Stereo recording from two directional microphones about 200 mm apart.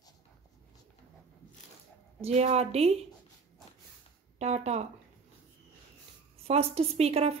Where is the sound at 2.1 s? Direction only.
30° right (ahead or behind).